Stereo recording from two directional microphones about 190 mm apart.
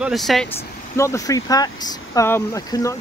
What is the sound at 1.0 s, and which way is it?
Speech, 15° left (ahead or behind).